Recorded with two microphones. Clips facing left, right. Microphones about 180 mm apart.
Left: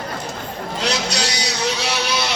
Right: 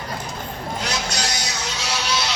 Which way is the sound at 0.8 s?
70° left (ahead or behind).